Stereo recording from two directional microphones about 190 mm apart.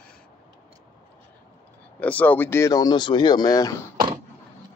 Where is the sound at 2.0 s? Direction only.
5° left (ahead or behind).